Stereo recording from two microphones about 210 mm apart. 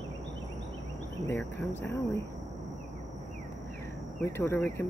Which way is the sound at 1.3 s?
10° left (ahead or behind).